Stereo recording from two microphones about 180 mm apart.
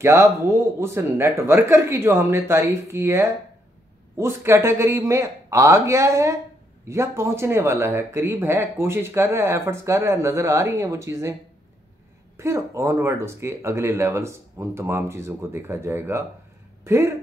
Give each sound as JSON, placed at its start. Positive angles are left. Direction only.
{"t": 0.0, "sound": "speech", "side_deg": -15}
{"t": 12.4, "sound": "speech", "side_deg": -15}